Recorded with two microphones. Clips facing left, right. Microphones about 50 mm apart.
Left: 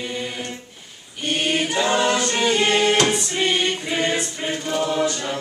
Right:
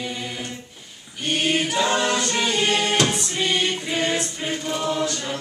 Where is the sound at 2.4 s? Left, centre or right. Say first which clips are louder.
Left 6 dB; centre.